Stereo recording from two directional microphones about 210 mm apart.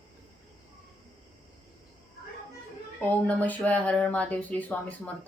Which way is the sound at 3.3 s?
5° left (ahead or behind).